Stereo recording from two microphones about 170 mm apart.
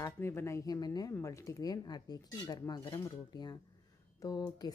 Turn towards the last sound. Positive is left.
turn(degrees=20)  # may be behind; listen again after turning